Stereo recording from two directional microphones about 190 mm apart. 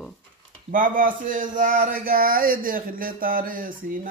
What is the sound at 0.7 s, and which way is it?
Speech, 45° right (ahead or behind).